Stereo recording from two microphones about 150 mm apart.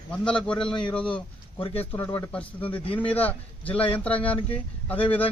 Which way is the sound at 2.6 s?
35° left (ahead or behind).